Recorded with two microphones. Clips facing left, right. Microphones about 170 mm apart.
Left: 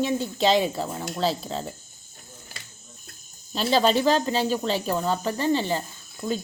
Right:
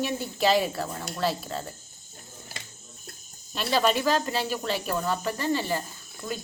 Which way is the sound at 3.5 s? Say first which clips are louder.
Left 3 dB; 30° left (ahead or behind).